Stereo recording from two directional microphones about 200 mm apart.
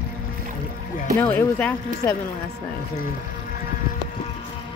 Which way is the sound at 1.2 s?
10° left (ahead or behind).